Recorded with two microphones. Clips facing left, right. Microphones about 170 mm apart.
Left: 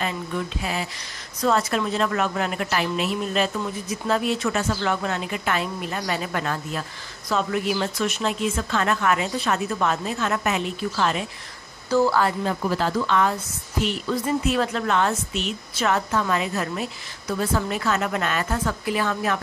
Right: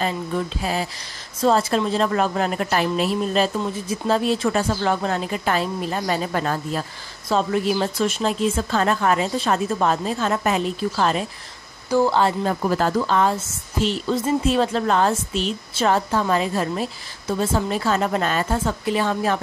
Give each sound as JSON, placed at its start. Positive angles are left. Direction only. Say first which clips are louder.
{"t": 0.0, "sound": "a woman's voice", "louder": "right 3 dB", "side_deg": -35}
{"t": 11.9, "sound": "speech", "louder": "right 1 dB", "side_deg": -15}
{"t": 12.4, "sound": "a woman's voice", "louder": "right 3 dB", "side_deg": -45}